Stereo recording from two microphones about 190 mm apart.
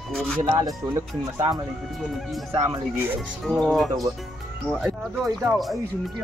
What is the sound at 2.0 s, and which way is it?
Speech, centre (ahead or behind).